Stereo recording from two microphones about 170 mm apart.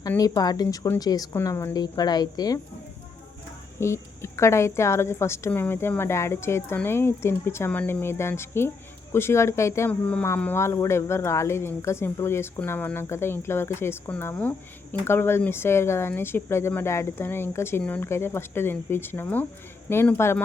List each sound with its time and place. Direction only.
0.2 s a woman's voice: 20° left (ahead or behind)
3.8 s speech: 15° left (ahead or behind)